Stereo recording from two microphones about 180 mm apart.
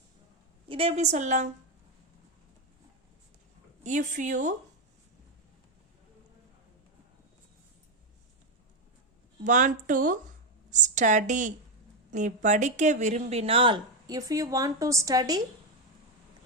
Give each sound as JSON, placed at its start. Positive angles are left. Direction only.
{"t": 0.7, "sound": "a woman's voice", "side_deg": -30}
{"t": 3.8, "sound": "a woman's voice", "side_deg": -45}
{"t": 9.4, "sound": "a woman's voice", "side_deg": -45}